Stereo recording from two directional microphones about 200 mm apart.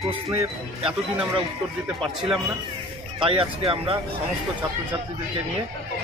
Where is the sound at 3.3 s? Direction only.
30° right (ahead or behind).